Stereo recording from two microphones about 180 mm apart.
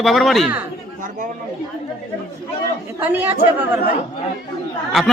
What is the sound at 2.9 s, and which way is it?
Speech, 10° right (ahead or behind).